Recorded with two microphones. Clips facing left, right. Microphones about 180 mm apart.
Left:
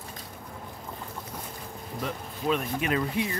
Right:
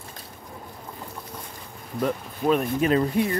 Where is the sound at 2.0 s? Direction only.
45° right (ahead or behind).